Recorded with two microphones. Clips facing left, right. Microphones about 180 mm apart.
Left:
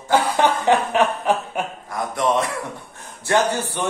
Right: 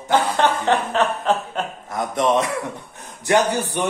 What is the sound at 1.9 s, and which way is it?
A man's voice, 20° right (ahead or behind).